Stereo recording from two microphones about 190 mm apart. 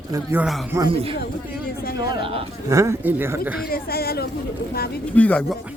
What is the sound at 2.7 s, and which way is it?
Speech, 15° right (ahead or behind).